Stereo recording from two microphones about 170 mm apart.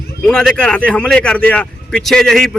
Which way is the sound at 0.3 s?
5° left (ahead or behind).